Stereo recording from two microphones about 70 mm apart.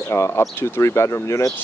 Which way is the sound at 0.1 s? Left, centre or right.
Left.